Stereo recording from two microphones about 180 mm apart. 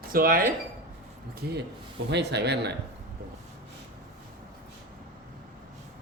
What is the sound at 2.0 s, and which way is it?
Speech, 70° right (ahead or behind).